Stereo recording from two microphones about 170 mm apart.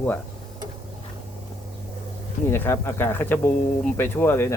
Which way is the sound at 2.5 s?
15° left (ahead or behind).